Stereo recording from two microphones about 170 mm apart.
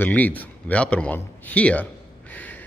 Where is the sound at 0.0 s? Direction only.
10° left (ahead or behind).